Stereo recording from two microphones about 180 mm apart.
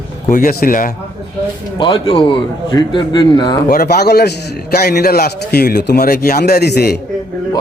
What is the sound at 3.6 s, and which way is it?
A man's voice, 60° left (ahead or behind).